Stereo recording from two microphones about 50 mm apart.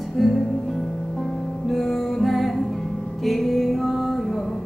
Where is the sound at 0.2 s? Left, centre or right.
Centre.